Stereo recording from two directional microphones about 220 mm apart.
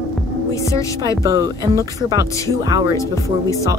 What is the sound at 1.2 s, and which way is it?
Speech, 15° right (ahead or behind).